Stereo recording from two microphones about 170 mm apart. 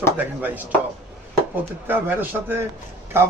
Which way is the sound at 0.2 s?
10° right (ahead or behind).